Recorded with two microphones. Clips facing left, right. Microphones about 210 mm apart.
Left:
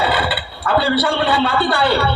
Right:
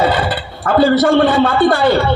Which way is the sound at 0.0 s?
45° right (ahead or behind).